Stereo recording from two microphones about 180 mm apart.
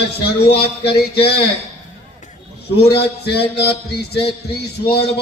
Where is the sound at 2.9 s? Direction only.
65° left (ahead or behind).